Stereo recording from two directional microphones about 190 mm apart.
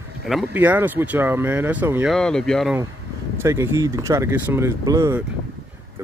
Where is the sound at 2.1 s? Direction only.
5° left (ahead or behind).